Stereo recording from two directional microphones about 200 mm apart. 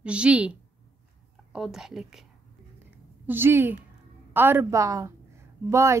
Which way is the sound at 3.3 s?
10° right (ahead or behind).